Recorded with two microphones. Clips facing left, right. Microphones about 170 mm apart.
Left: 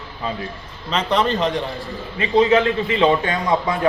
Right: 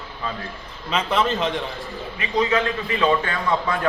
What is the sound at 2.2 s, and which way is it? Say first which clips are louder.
A man's voice: left 6 dB; 30° left (ahead or behind).